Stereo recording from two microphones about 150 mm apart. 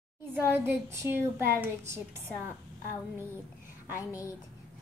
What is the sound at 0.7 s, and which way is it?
A woman's voice, 15° right (ahead or behind).